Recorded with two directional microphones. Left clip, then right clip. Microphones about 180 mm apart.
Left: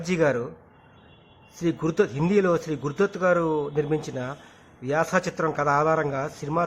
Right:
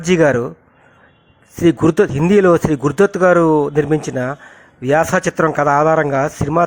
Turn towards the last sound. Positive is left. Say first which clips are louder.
# right 11 dB
turn(degrees=-35)  # may be behind; listen again after turning